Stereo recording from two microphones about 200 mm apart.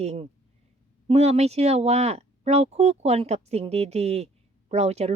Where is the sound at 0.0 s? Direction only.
35° right (ahead or behind).